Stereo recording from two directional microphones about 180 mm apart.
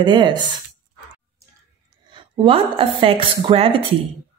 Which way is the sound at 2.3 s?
30° right (ahead or behind).